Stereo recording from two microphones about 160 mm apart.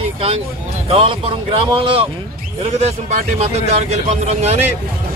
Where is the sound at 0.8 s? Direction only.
35° right (ahead or behind).